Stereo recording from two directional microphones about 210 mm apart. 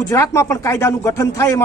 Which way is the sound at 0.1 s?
15° left (ahead or behind).